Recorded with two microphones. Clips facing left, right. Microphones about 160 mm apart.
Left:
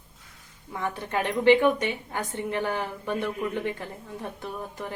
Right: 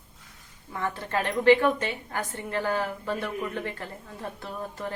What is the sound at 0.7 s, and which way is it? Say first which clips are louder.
A woman's voice: even; 15° left (ahead or behind).